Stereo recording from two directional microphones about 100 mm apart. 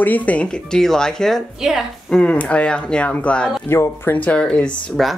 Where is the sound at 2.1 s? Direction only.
15° left (ahead or behind).